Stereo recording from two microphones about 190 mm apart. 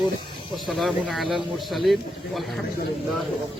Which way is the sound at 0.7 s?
Centre (ahead or behind).